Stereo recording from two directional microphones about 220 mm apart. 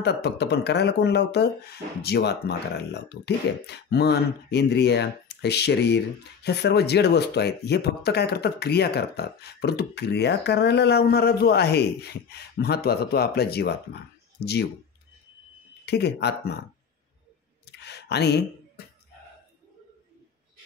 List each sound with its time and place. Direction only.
0.0 s speech: 50° left (ahead or behind)
15.8 s speech: 50° left (ahead or behind)
17.6 s clicking: 50° left (ahead or behind)